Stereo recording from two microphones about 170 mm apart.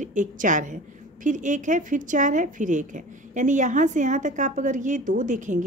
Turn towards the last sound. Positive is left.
turn(degrees=-45)  # may be behind; listen again after turning